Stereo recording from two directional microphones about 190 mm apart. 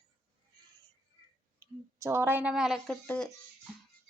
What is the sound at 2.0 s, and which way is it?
A woman's voice, 15° right (ahead or behind).